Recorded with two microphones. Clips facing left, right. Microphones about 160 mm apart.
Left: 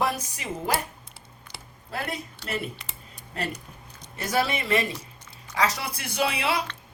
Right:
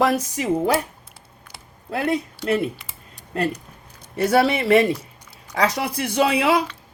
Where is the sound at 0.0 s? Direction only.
90° right.